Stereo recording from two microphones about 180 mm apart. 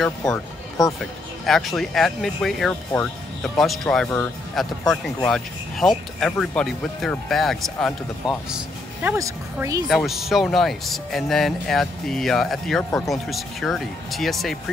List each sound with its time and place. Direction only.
0.0 s speech: centre (ahead or behind)
9.0 s speech: 10° right (ahead or behind)
9.8 s speech: centre (ahead or behind)